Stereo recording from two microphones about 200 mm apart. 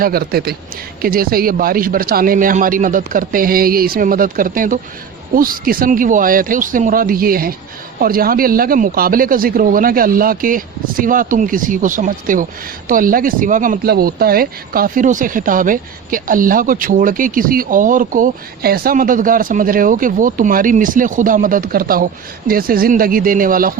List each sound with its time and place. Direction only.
0.0 s speech: 50° right (ahead or behind)